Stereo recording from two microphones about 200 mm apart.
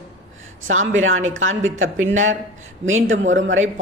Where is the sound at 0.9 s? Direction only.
75° right (ahead or behind).